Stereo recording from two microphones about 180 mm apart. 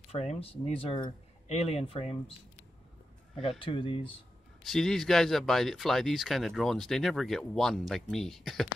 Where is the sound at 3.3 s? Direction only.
30° left (ahead or behind).